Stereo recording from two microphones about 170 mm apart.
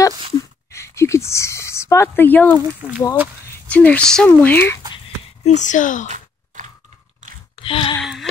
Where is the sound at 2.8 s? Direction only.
10° right (ahead or behind).